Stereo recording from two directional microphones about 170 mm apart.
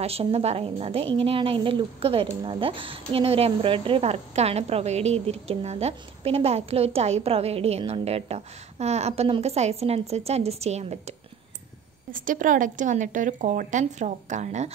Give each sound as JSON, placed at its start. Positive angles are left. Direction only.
{"t": 0.0, "sound": "speech", "side_deg": -35}
{"t": 12.1, "sound": "a woman's voice", "side_deg": -50}